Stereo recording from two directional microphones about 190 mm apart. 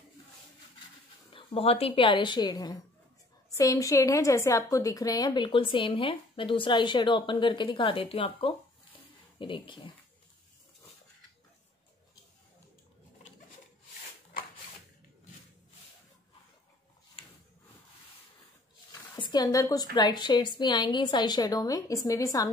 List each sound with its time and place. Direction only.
1.3 s a woman's voice: 30° left (ahead or behind)
18.9 s a woman's voice: 20° left (ahead or behind)